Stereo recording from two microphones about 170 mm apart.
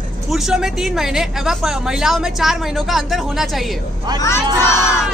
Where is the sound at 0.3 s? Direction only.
5° right (ahead or behind).